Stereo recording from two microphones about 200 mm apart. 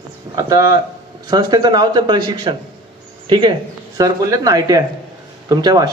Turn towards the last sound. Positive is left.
turn(degrees=-20)  # may be behind; listen again after turning